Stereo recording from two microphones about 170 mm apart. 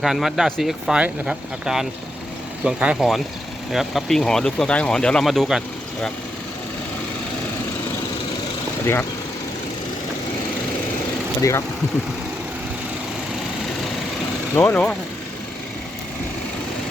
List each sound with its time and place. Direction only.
0.0 s speech: centre (ahead or behind)
8.8 s speech: 15° left (ahead or behind)
11.3 s speech: 20° left (ahead or behind)
14.5 s speech: 10° left (ahead or behind)